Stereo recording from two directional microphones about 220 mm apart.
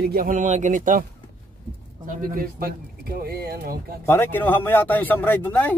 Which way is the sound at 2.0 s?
40° right (ahead or behind).